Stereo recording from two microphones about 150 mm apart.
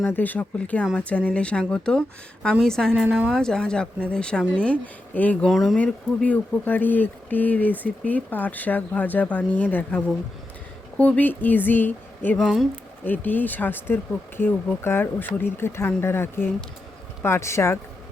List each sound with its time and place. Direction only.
0.0 s a woman's voice: 10° left (ahead or behind); by 3.4 s 5° right (ahead or behind)
3.4 s a woman's voice: 5° left (ahead or behind)
5.5 s a woman's voice: centre (ahead or behind)
13.1 s speech: 10° left (ahead or behind)